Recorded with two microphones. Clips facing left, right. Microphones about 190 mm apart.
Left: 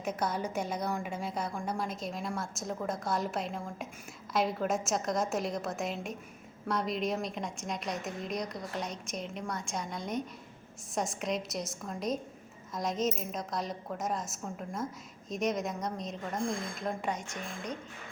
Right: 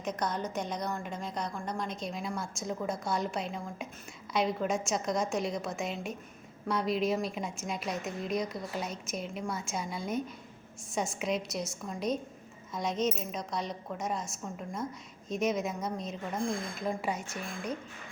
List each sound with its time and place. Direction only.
0.0 s a woman's voice: 5° left (ahead or behind)